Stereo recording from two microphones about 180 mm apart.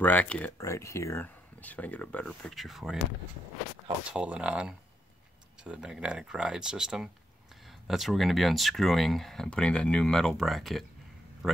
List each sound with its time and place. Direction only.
0.0 s speech: 10° left (ahead or behind)
4.1 s speech: 5° right (ahead or behind)